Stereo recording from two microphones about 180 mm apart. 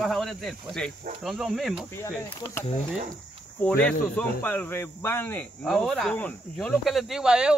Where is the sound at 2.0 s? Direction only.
15° left (ahead or behind).